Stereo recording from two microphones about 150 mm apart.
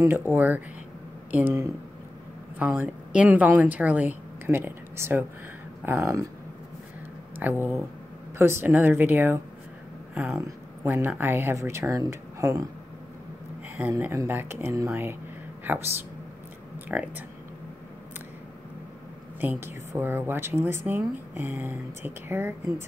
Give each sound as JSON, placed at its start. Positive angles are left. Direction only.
{"t": 0.0, "sound": "a woman's voice", "side_deg": -15}
{"t": 7.4, "sound": "speech", "side_deg": -10}
{"t": 13.7, "sound": "speech", "side_deg": -15}
{"t": 16.9, "sound": "speech", "side_deg": -10}
{"t": 19.4, "sound": "speech", "side_deg": -15}